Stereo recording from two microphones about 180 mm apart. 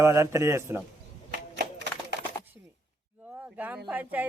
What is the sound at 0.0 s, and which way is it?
Speech, 15° right (ahead or behind).